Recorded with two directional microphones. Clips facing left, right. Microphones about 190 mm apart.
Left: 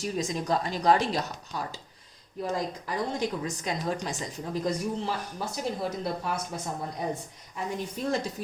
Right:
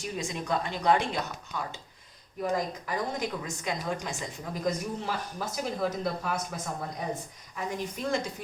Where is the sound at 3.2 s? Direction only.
35° left (ahead or behind).